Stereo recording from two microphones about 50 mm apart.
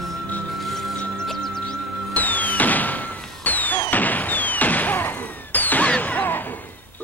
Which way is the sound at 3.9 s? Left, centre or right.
Left.